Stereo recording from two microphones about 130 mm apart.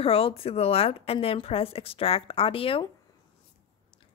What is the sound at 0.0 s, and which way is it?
Speech, 45° left (ahead or behind).